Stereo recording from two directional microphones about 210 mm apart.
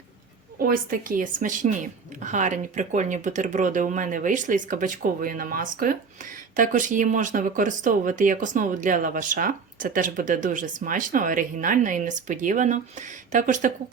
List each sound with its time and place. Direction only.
0.6 s speech: 40° right (ahead or behind)